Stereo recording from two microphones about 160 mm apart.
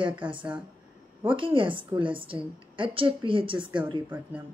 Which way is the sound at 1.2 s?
30° right (ahead or behind).